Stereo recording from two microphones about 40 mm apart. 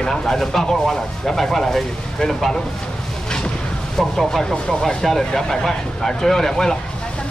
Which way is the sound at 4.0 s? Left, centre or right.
Centre.